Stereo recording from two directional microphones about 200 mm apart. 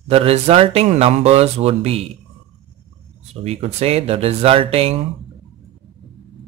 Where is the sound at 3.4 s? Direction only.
30° right (ahead or behind).